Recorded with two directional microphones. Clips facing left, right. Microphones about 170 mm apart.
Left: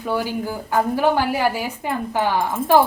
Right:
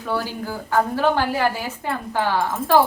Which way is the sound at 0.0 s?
15° left (ahead or behind).